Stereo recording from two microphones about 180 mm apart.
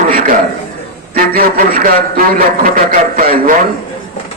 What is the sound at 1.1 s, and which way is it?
A man's voice, 55° right (ahead or behind).